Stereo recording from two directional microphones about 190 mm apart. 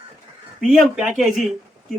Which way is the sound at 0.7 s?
Centre (ahead or behind).